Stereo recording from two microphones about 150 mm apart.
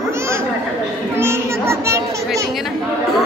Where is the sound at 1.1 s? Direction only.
15° right (ahead or behind).